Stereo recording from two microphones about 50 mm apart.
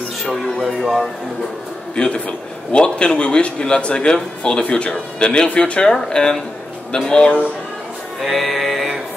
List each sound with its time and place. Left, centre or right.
0.2 s music: centre
2.0 s a man's voice: left
8.2 s music: centre